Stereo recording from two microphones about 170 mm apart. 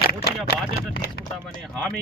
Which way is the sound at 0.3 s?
70° left (ahead or behind).